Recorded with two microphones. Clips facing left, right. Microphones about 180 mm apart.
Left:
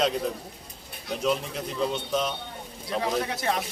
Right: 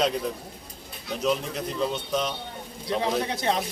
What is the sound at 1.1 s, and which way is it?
A man's voice, centre (ahead or behind).